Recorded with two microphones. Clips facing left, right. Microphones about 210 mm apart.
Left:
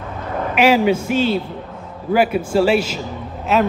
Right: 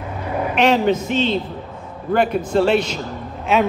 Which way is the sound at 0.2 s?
10° right (ahead or behind).